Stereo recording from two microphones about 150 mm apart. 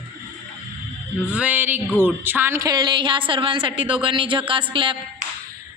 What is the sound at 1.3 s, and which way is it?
Speech, 10° right (ahead or behind).